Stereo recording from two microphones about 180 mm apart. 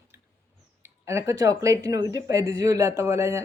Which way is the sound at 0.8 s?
15° right (ahead or behind).